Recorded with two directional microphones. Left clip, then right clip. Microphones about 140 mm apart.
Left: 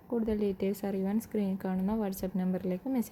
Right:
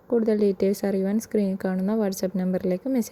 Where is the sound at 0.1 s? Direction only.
45° right (ahead or behind).